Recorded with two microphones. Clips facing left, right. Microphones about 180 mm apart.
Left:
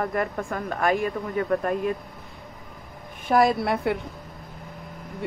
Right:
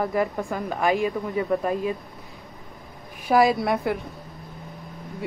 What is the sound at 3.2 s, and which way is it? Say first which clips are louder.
Speech: right 1 dB; 5° right (ahead or behind).